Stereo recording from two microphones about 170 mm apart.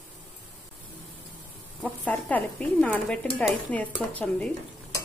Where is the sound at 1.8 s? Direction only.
10° left (ahead or behind).